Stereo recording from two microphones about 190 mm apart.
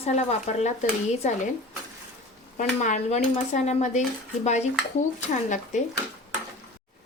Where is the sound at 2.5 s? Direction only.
40° left (ahead or behind).